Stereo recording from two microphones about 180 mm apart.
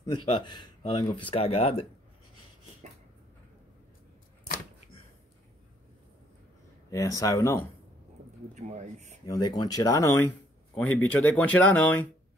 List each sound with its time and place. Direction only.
0.0 s speech: 25° left (ahead or behind)
6.9 s speech: 20° left (ahead or behind)
8.5 s speech: 40° right (ahead or behind)
9.2 s speech: 20° left (ahead or behind)